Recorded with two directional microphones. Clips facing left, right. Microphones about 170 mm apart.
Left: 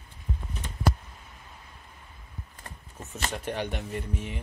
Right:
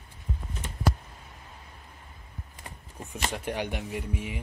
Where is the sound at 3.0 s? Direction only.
15° right (ahead or behind).